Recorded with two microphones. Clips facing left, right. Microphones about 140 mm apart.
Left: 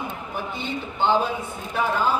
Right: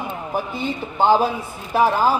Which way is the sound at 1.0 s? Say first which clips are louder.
Right 5 dB; 40° right (ahead or behind).